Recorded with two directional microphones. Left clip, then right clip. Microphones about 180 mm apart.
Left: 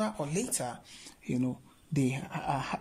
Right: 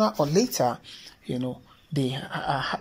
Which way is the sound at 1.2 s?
15° left (ahead or behind).